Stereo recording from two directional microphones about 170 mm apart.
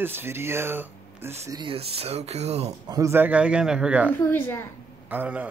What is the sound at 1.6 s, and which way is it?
Speech, 35° right (ahead or behind).